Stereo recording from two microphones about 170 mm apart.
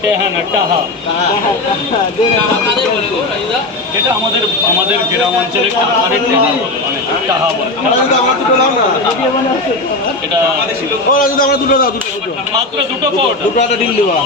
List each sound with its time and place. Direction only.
11.1 s a man's voice: 55° left (ahead or behind)